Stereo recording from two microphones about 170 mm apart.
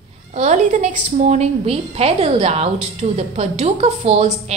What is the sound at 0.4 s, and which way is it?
A woman's voice, 45° right (ahead or behind).